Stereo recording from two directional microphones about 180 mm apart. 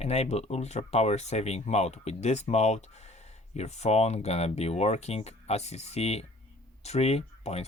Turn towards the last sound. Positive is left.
turn(degrees=35)  # may be behind; listen again after turning